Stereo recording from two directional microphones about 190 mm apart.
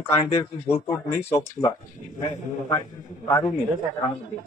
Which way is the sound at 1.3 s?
15° left (ahead or behind).